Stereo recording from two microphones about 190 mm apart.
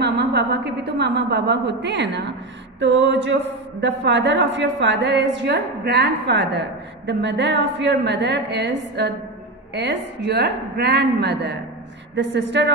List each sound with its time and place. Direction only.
0.0 s a woman's voice: 60° right (ahead or behind)